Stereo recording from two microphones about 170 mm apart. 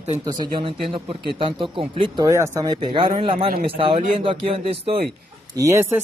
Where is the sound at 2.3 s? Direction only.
20° right (ahead or behind).